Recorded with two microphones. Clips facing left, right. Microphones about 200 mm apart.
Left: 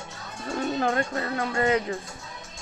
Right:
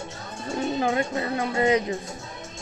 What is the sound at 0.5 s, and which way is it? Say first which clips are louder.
Speech: right 1 dB; 10° right (ahead or behind).